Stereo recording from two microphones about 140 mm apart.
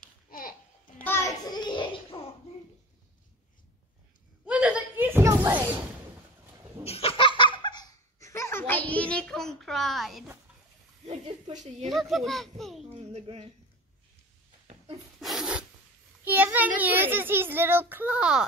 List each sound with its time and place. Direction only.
0.3 s babbling: 90° left
0.9 s a sound: 15° left (ahead or behind)
1.4 s a sound: 30° left (ahead or behind)
4.5 s a sound: 10° right (ahead or behind)
6.9 s giggle: 40° left (ahead or behind); by 10.2 s centre (ahead or behind)
11.5 s a woman's voice: 55° right (ahead or behind)
11.9 s a child's voice: centre (ahead or behind)
13.1 s speech: 50° right (ahead or behind)
15.1 s filing: centre (ahead or behind)
16.3 s a child's voice: 10° right (ahead or behind)